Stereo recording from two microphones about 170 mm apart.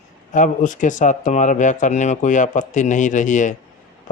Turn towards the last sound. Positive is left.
turn(degrees=45)  # may be behind; listen again after turning